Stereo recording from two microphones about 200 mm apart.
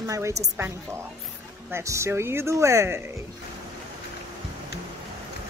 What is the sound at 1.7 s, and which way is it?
Speech, 15° right (ahead or behind).